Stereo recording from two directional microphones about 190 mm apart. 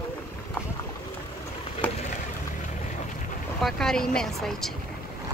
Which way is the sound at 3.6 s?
Centre (ahead or behind).